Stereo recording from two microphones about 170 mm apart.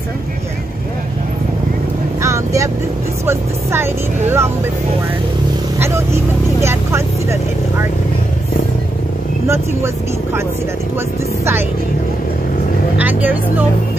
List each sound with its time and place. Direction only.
2.2 s vehicle: 15° right (ahead or behind)
3.3 s speech: 15° right (ahead or behind)
5.8 s speech: 15° right (ahead or behind)
12.9 s speech: 10° right (ahead or behind)